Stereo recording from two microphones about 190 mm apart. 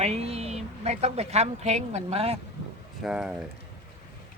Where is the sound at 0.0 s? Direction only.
35° right (ahead or behind).